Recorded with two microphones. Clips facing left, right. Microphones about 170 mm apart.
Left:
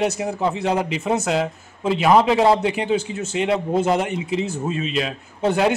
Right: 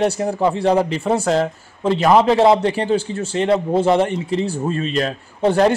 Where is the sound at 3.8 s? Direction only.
30° right (ahead or behind).